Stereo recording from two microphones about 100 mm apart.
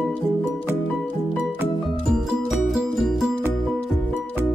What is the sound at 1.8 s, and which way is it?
Music, centre (ahead or behind).